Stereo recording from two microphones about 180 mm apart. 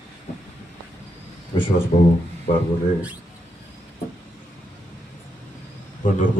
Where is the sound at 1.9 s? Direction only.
40° left (ahead or behind).